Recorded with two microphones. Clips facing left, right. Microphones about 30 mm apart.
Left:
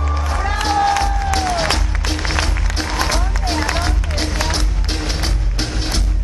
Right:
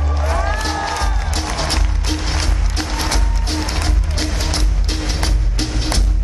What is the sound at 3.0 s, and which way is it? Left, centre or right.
Music, centre.